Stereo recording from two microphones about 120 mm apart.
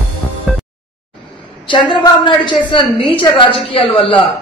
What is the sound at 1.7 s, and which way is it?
A woman's voice, 40° left (ahead or behind).